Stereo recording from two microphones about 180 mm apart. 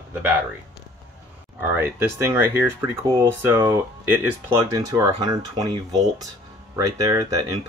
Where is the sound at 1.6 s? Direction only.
15° right (ahead or behind).